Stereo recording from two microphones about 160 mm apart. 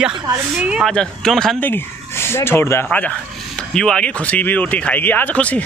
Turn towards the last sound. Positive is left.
turn(degrees=10)  # may be behind; listen again after turning